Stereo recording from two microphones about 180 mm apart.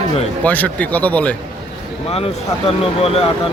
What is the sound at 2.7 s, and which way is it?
Speech, 35° left (ahead or behind).